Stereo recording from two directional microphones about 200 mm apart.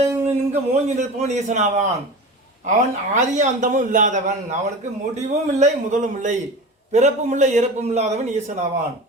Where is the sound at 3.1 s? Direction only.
40° right (ahead or behind).